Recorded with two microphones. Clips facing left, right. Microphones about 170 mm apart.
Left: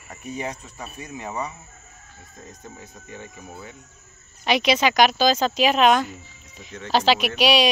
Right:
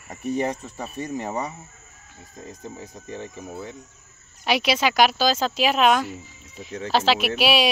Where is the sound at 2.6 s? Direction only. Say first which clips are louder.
Right 4 dB; 35° right (ahead or behind).